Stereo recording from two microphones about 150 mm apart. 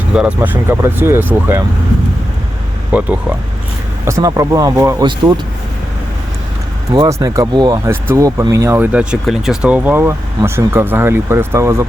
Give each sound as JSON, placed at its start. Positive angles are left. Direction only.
{"t": 0.1, "sound": "speech", "side_deg": -10}
{"t": 2.9, "sound": "speech", "side_deg": -10}
{"t": 4.0, "sound": "speech", "side_deg": -20}
{"t": 6.9, "sound": "speech", "side_deg": -25}